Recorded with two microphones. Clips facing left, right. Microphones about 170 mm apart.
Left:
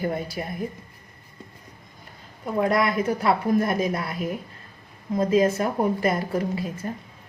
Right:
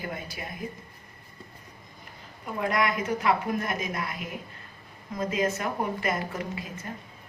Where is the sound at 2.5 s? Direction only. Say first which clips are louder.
Left 5 dB; 35° left (ahead or behind).